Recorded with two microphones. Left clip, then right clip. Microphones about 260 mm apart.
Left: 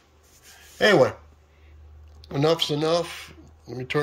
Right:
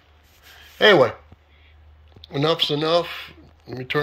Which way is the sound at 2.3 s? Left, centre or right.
Centre.